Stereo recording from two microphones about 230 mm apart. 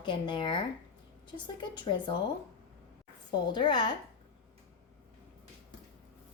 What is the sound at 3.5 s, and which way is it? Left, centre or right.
Speech, centre.